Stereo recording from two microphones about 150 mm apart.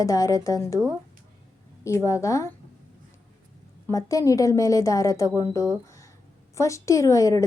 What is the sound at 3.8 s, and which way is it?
A woman's voice, 20° left (ahead or behind).